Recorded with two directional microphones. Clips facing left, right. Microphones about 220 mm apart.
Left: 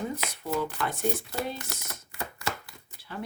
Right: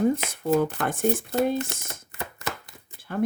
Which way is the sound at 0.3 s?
50° right (ahead or behind).